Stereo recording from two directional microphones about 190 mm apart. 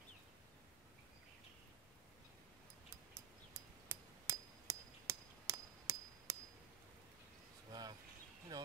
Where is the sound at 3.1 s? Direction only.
15° right (ahead or behind).